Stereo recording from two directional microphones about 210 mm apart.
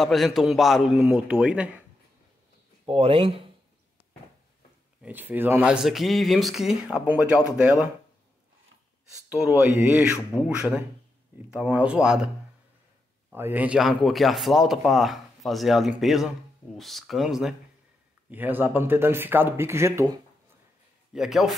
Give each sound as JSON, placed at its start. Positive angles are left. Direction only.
{"t": 0.0, "sound": "speech", "side_deg": 0}
{"t": 2.8, "sound": "speech", "side_deg": -25}
{"t": 5.0, "sound": "speech", "side_deg": -10}
{"t": 9.3, "sound": "speech", "side_deg": -10}
{"t": 13.3, "sound": "speech", "side_deg": -10}
{"t": 21.1, "sound": "speech", "side_deg": 0}